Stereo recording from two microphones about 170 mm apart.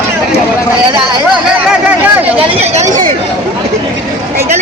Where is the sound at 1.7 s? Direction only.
5° right (ahead or behind).